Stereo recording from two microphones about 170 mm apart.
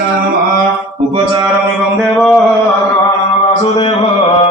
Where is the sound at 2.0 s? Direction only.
Centre (ahead or behind).